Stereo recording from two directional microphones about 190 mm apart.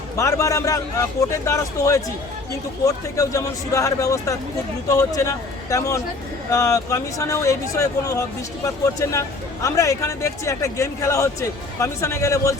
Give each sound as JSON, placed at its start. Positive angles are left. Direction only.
{"t": 0.2, "sound": "a man's voice", "side_deg": 15}